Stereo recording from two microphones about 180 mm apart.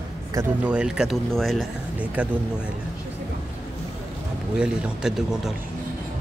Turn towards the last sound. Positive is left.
turn(degrees=-5)  # may be behind; listen again after turning